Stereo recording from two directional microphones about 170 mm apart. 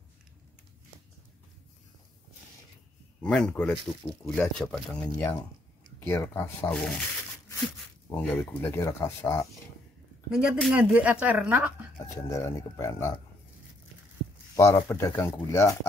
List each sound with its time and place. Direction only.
3.2 s speech: 5° left (ahead or behind)
8.2 s speech: 10° left (ahead or behind)
10.3 s speech: 5° right (ahead or behind)
12.0 s speech: 20° left (ahead or behind)
14.5 s speech: 20° left (ahead or behind)